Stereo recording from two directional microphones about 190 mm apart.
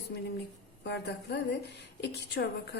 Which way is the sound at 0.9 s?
65° left (ahead or behind).